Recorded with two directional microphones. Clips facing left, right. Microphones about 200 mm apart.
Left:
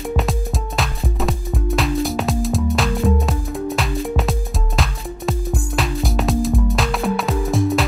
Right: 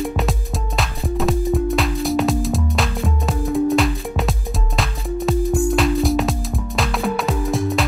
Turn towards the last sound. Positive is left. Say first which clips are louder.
# left 2 dB
turn(degrees=0)  # may be behind; listen again after turning